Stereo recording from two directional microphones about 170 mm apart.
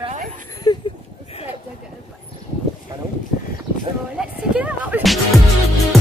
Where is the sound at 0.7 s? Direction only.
20° left (ahead or behind).